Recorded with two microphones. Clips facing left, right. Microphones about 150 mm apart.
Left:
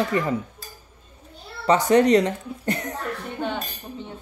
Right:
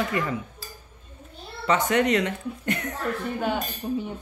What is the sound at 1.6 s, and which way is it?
Speech, 35° left (ahead or behind).